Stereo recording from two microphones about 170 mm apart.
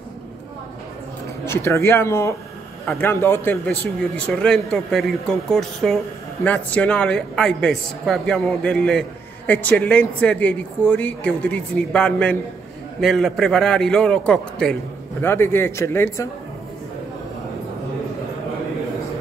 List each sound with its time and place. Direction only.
1.4 s a man's voice: 15° left (ahead or behind)